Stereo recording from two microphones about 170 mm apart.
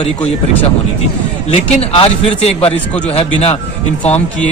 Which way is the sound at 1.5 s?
35° left (ahead or behind).